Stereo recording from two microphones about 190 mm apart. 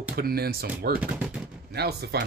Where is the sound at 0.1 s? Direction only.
55° right (ahead or behind).